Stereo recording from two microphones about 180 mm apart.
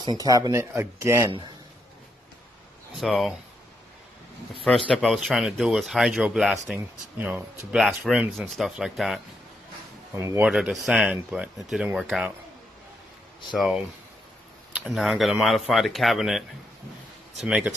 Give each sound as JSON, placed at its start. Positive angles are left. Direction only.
{"t": 0.0, "sound": "speech", "side_deg": -20}
{"t": 3.0, "sound": "speech", "side_deg": 0}
{"t": 4.6, "sound": "speech", "side_deg": 5}
{"t": 10.1, "sound": "speech", "side_deg": -15}
{"t": 10.4, "sound": "speech", "side_deg": -5}
{"t": 13.5, "sound": "speech", "side_deg": 0}